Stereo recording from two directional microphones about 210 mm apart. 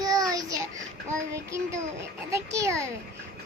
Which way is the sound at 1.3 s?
15° right (ahead or behind).